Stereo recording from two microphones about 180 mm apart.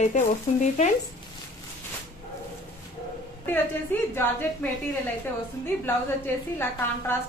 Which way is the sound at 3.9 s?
10° left (ahead or behind).